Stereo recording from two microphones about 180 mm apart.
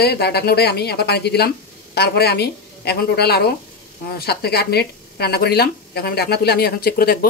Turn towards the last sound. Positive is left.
turn(degrees=60)  # may be behind; listen again after turning